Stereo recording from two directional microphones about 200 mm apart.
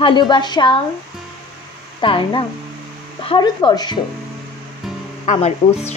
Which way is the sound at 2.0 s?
25° left (ahead or behind).